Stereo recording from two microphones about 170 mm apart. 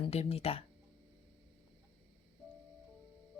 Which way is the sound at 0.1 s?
35° left (ahead or behind).